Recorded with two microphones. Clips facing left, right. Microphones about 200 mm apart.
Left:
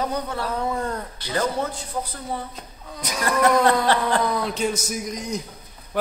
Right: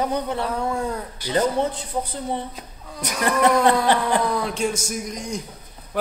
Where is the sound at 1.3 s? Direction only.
20° right (ahead or behind).